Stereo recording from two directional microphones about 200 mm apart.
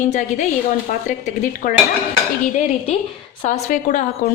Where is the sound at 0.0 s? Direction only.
40° left (ahead or behind).